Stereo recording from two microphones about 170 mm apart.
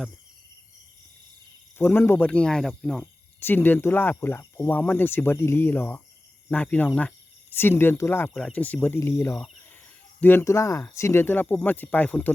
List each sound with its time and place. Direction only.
1.8 s speech: 10° left (ahead or behind)
8.3 s speech: centre (ahead or behind)